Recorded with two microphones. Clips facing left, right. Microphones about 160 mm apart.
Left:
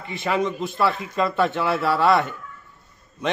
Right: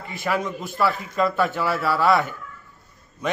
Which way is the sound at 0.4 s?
25° left (ahead or behind).